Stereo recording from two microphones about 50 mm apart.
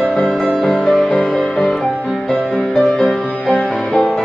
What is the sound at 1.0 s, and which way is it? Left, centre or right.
Music, left.